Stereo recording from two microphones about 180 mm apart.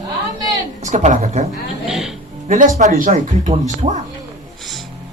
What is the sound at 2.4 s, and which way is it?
Speech, 45° right (ahead or behind).